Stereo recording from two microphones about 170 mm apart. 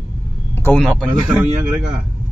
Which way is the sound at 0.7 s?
5° left (ahead or behind).